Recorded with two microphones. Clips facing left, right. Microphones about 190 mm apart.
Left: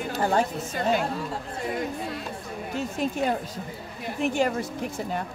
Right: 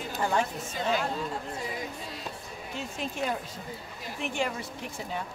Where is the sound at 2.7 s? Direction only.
40° left (ahead or behind).